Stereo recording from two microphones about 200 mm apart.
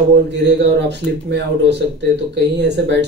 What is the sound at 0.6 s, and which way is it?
Speech, 60° right (ahead or behind).